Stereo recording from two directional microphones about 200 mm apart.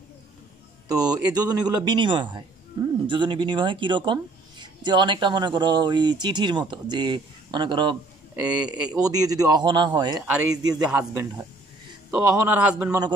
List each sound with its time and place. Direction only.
0.8 s speech: 20° right (ahead or behind)
8.4 s a man's voice: 5° right (ahead or behind)
9.0 s a man's voice: 20° right (ahead or behind)